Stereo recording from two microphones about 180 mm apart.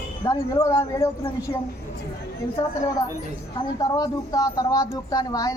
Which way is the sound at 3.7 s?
20° left (ahead or behind).